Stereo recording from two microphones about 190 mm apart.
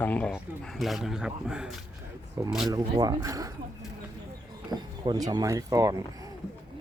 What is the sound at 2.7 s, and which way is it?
Speech, 20° right (ahead or behind).